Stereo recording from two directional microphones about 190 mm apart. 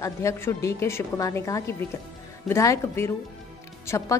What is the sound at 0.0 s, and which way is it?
A woman's voice, 15° left (ahead or behind).